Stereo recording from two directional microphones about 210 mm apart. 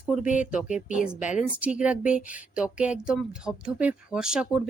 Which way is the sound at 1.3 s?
5° right (ahead or behind).